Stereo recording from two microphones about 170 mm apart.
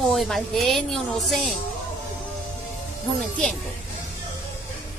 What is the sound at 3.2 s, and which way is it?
Speech, 5° left (ahead or behind).